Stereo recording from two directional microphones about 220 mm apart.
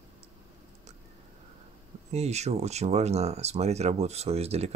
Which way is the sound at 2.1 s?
30° right (ahead or behind).